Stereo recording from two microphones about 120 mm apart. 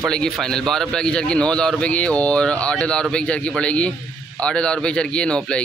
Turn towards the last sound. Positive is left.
turn(degrees=10)  # may be behind; listen again after turning